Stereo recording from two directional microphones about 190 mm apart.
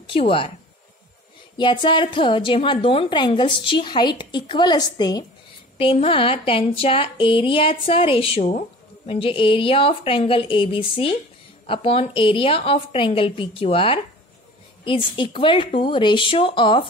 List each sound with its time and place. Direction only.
0.0 s a woman's voice: 30° left (ahead or behind)
1.6 s speech: 25° left (ahead or behind)